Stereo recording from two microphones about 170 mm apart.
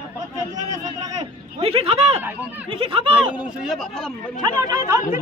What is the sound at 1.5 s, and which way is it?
Speech, 35° right (ahead or behind).